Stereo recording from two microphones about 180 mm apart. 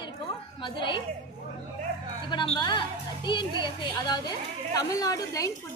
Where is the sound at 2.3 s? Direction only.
25° left (ahead or behind).